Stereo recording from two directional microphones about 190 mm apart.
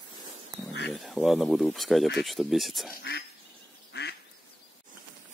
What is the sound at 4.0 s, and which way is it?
Duck, 55° left (ahead or behind).